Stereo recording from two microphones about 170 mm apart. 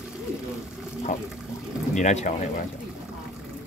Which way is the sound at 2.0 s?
45° left (ahead or behind).